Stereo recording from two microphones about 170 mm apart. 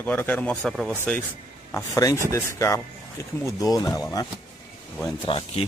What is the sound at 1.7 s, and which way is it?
Speech, 20° left (ahead or behind).